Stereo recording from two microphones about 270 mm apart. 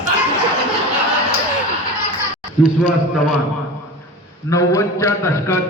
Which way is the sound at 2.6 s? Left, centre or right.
Centre.